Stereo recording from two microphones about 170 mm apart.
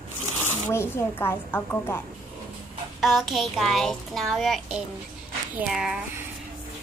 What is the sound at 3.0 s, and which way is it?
A child's voice, centre (ahead or behind).